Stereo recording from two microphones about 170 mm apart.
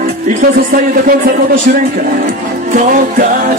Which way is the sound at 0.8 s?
55° right (ahead or behind).